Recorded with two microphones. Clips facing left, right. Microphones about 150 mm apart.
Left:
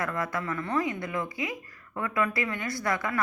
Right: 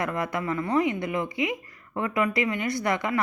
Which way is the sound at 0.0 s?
20° right (ahead or behind).